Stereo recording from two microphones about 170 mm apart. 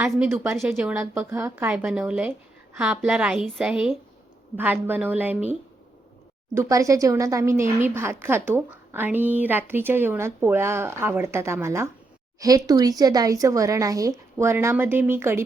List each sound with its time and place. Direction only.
0.0 s a woman's voice: 10° right (ahead or behind)